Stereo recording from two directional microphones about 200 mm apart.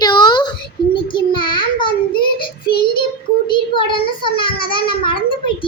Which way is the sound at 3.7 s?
25° left (ahead or behind).